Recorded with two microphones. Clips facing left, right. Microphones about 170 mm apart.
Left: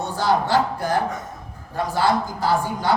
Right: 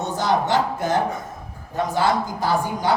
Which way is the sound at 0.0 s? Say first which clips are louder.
Even; 20° right (ahead or behind).